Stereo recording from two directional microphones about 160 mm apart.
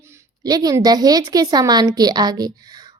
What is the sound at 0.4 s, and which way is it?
A woman's voice, 25° right (ahead or behind).